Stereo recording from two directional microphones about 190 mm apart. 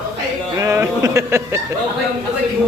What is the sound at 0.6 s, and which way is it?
Speech, 15° right (ahead or behind).